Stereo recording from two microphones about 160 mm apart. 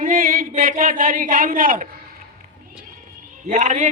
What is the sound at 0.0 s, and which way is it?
A man's voice, 55° right (ahead or behind).